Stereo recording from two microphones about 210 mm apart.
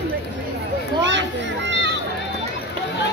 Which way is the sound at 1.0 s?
60° right (ahead or behind).